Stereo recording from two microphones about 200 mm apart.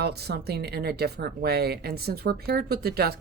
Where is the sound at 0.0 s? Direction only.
55° right (ahead or behind).